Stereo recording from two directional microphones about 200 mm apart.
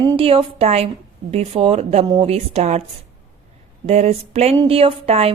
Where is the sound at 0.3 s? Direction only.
30° right (ahead or behind).